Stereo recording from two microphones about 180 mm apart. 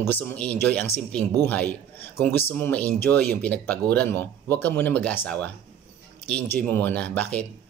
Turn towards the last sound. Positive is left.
turn(degrees=10)  # may be behind; listen again after turning